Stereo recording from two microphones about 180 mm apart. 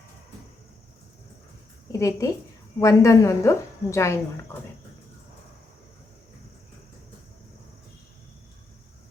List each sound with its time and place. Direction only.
1.9 s a woman's voice: 15° left (ahead or behind)